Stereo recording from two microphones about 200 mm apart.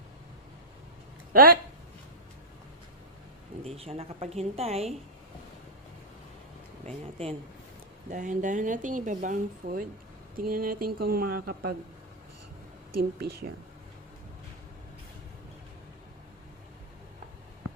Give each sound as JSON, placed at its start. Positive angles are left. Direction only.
{"t": 1.3, "sound": "speech", "side_deg": -50}
{"t": 3.6, "sound": "speech", "side_deg": -30}
{"t": 7.0, "sound": "speech", "side_deg": -30}
{"t": 13.0, "sound": "speech", "side_deg": -50}